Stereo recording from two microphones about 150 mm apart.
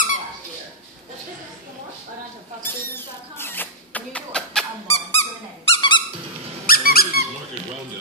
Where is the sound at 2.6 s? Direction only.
15° left (ahead or behind).